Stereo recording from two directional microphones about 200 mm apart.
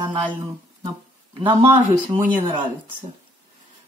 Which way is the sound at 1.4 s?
10° right (ahead or behind).